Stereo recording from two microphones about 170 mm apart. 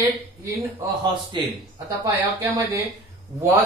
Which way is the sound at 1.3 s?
30° right (ahead or behind).